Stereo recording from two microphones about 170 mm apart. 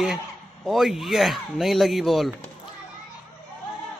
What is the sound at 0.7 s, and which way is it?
Speech, centre (ahead or behind).